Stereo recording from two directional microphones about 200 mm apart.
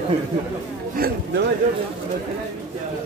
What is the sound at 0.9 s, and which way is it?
Speech, 50° right (ahead or behind).